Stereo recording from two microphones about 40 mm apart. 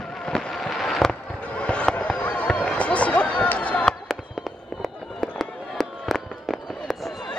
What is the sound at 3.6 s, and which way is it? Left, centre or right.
Fireworks, left.